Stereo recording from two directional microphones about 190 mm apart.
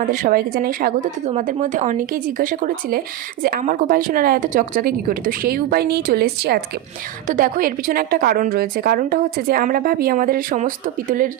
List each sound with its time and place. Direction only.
0.0 s a woman's voice: 45° right (ahead or behind)
7.3 s a woman's voice: 45° right (ahead or behind)